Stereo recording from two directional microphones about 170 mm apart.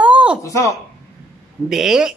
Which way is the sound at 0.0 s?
5° right (ahead or behind).